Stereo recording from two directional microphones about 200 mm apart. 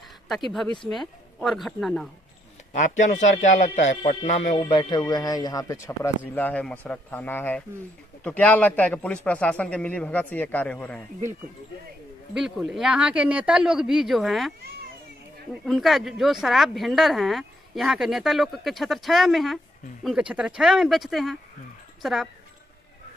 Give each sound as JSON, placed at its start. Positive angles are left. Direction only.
{"t": 0.8, "sound": "speech", "side_deg": 0}
{"t": 2.7, "sound": "a man's voice", "side_deg": 40}
{"t": 4.7, "sound": "speech", "side_deg": 20}
{"t": 12.4, "sound": "speech", "side_deg": -5}
{"t": 15.6, "sound": "speech", "side_deg": 0}